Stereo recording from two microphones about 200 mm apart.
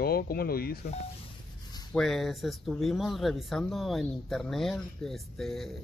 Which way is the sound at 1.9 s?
Centre (ahead or behind).